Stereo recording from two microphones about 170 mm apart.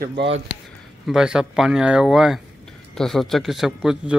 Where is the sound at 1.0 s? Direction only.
5° right (ahead or behind).